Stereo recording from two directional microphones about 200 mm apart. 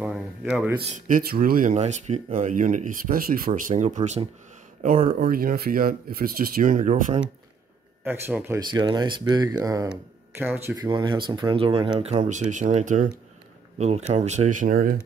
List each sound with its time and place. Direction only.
0.0 s a sound: 5° right (ahead or behind)
0.7 s speech: 45° right (ahead or behind)
5.2 s speech: 50° right (ahead or behind)
8.0 s speech: 10° right (ahead or behind)
8.6 s speech: 20° right (ahead or behind)
10.8 s speech: 20° right (ahead or behind); by 15.0 s 45° right (ahead or behind)